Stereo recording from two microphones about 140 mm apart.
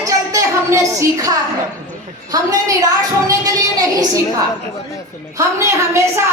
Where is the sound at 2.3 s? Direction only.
25° right (ahead or behind).